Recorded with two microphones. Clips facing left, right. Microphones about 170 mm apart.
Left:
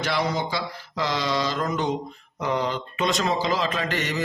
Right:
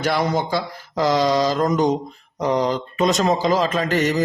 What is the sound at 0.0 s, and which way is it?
A man's voice, 50° right (ahead or behind).